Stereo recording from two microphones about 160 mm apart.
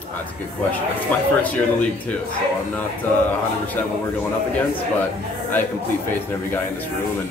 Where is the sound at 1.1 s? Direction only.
10° left (ahead or behind).